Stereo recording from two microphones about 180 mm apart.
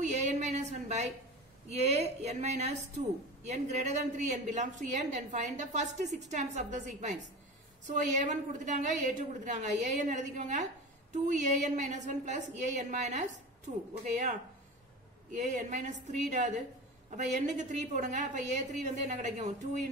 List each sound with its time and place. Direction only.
0.0 s a sound: 40° right (ahead or behind)
1.7 s a woman's voice: 35° right (ahead or behind)
15.3 s a woman's voice: 45° right (ahead or behind)